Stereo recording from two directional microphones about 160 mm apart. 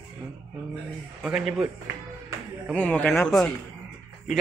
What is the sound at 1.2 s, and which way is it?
Speech, centre (ahead or behind).